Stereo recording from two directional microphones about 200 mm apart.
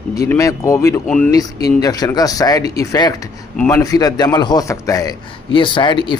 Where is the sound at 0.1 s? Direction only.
15° left (ahead or behind).